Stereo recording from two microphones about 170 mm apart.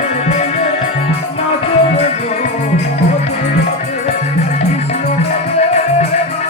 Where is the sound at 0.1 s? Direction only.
40° left (ahead or behind).